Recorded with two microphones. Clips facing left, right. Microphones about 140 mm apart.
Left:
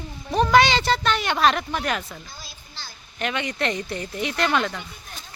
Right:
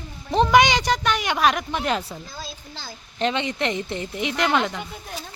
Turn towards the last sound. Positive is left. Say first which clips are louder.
# right 1 dB
turn(degrees=-20)  # may be behind; listen again after turning